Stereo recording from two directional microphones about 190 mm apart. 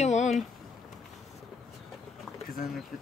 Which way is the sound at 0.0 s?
35° left (ahead or behind).